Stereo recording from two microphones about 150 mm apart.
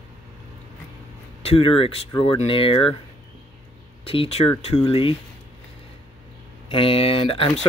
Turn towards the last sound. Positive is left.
turn(degrees=40)  # may be behind; listen again after turning